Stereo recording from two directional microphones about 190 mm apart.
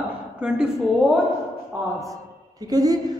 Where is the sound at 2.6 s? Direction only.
20° right (ahead or behind).